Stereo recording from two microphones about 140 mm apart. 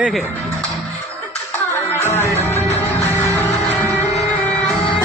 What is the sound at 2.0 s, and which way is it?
Music, 15° left (ahead or behind).